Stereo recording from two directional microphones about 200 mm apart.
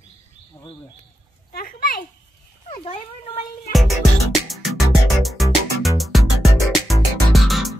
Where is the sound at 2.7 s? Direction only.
25° left (ahead or behind).